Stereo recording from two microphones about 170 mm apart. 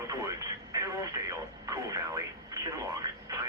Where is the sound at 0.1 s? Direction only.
20° right (ahead or behind).